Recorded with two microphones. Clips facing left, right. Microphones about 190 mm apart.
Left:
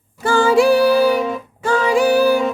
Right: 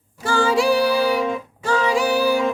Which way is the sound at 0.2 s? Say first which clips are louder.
Left 5 dB; 55° left (ahead or behind).